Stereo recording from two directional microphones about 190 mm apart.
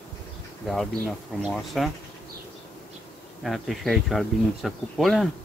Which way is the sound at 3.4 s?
Centre (ahead or behind).